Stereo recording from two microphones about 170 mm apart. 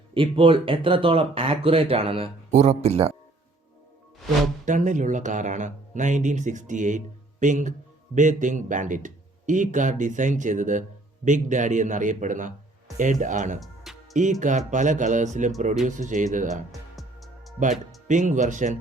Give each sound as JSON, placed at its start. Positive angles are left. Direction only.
{"t": 0.1, "sound": "speech", "side_deg": -30}
{"t": 4.6, "sound": "speech", "side_deg": -45}
{"t": 16.9, "sound": "music", "side_deg": 0}
{"t": 17.6, "sound": "speech", "side_deg": -45}